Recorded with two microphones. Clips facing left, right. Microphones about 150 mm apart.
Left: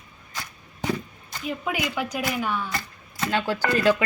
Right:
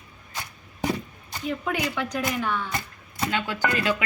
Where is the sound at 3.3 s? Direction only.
35° left (ahead or behind).